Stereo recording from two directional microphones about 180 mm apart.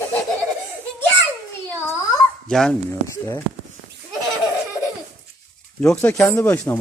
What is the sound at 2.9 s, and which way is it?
Speech, 15° left (ahead or behind).